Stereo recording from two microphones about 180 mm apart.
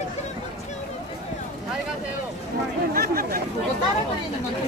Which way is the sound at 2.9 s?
55° right (ahead or behind).